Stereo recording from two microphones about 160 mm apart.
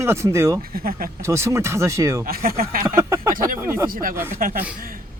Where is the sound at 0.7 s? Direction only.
65° right (ahead or behind).